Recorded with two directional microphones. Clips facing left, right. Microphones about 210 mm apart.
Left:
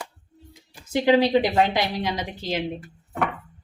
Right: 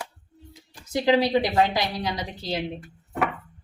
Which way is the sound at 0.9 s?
20° left (ahead or behind).